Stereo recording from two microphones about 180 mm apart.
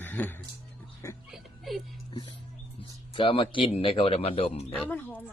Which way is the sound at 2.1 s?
25° left (ahead or behind).